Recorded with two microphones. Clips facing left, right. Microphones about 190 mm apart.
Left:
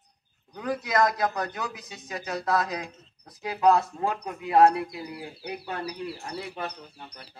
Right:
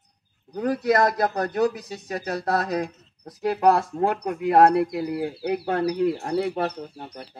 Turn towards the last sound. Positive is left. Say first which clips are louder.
# right 9 dB
turn(degrees=-45)  # may be behind; listen again after turning